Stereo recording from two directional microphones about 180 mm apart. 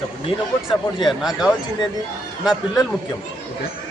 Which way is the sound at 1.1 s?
Centre (ahead or behind).